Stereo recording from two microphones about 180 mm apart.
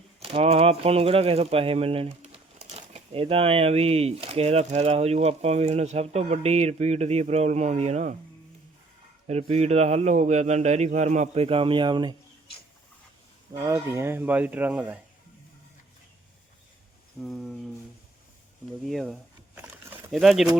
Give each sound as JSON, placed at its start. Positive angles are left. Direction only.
{"t": 0.2, "sound": "speech", "side_deg": -30}
{"t": 9.2, "sound": "speech", "side_deg": -35}
{"t": 13.5, "sound": "speech", "side_deg": -20}
{"t": 17.2, "sound": "speech", "side_deg": 0}
{"t": 18.8, "sound": "speech", "side_deg": 0}
{"t": 19.5, "sound": "a sound", "side_deg": -10}